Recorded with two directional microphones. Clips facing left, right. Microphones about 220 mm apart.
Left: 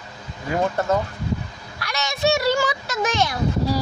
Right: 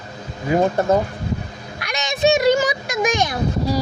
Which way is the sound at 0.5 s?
20° right (ahead or behind).